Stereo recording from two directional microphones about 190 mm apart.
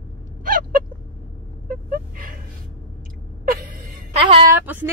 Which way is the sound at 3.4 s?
45° right (ahead or behind).